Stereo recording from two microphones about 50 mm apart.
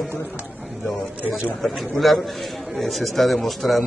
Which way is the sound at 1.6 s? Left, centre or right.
Centre.